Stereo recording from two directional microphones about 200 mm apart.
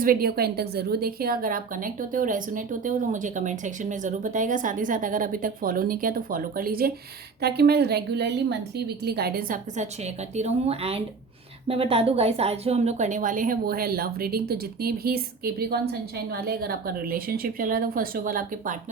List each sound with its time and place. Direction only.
0.0 s a woman's voice: 45° right (ahead or behind)